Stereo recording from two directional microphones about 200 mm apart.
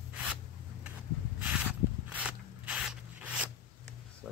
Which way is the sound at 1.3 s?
10° right (ahead or behind).